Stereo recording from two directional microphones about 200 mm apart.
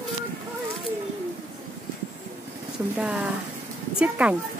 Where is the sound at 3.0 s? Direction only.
5° right (ahead or behind).